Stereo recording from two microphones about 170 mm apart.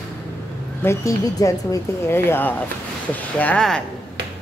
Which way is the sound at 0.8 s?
15° left (ahead or behind).